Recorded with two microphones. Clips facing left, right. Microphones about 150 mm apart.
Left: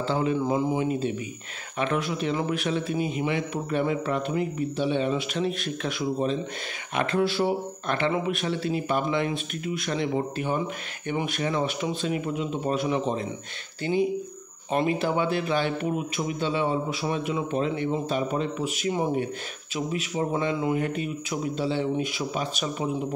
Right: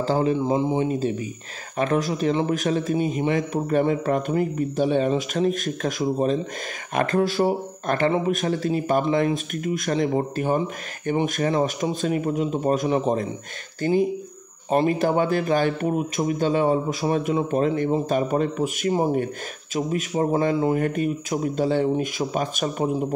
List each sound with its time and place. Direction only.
0.0 s a man's voice: 40° right (ahead or behind)
0.4 s speech: 20° right (ahead or behind)
0.8 s a man's voice: 35° right (ahead or behind)